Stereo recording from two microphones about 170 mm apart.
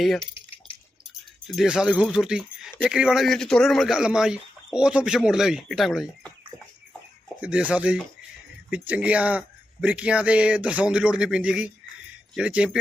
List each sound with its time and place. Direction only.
0.2 s drip: 30° left (ahead or behind)
1.5 s a man's voice: 5° right (ahead or behind)
7.4 s speech: 10° right (ahead or behind)